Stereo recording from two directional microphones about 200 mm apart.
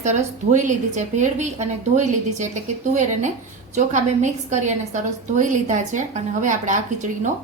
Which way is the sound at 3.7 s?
35° right (ahead or behind).